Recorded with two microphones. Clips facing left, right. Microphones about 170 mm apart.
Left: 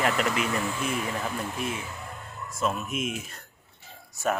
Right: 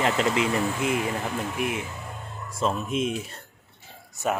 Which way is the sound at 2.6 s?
30° right (ahead or behind).